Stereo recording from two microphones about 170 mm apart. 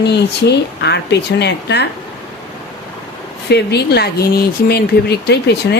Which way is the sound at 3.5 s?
75° left (ahead or behind).